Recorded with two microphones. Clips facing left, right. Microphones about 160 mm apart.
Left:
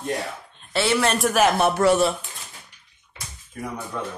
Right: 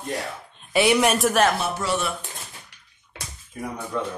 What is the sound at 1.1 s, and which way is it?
Speech, centre (ahead or behind).